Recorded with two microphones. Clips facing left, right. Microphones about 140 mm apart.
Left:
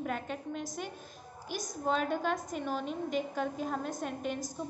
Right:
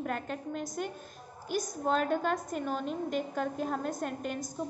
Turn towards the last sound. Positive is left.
turn(degrees=0)  # may be behind; listen again after turning